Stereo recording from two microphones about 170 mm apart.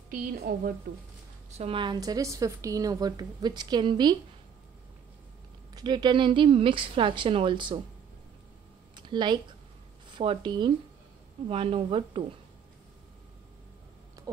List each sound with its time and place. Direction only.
0.1 s a woman's voice: 55° right (ahead or behind)
1.5 s a woman's voice: 35° right (ahead or behind)
5.8 s a woman's voice: 25° right (ahead or behind)
8.9 s a sound: 25° right (ahead or behind)
10.0 s a woman's voice: 30° right (ahead or behind)